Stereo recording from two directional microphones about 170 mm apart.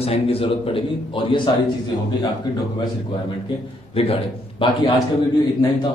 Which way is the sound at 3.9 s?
30° left (ahead or behind).